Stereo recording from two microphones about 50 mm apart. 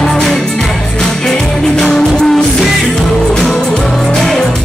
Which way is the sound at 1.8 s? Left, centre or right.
Centre.